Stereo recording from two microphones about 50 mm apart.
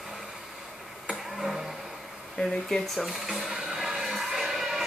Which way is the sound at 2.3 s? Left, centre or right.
Centre.